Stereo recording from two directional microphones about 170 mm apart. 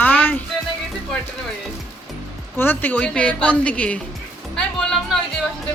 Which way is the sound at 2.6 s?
10° left (ahead or behind).